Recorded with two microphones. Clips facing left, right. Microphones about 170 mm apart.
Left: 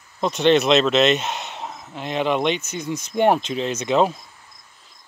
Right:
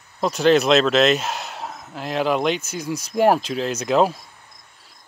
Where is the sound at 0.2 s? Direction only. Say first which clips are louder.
Even; centre (ahead or behind).